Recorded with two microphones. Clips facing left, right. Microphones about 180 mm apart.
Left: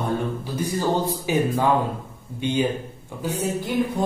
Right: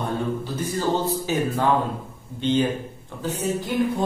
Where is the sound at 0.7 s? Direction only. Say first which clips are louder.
Even; 15° left (ahead or behind).